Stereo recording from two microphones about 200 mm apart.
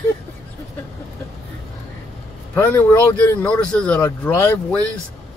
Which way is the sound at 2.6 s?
10° left (ahead or behind).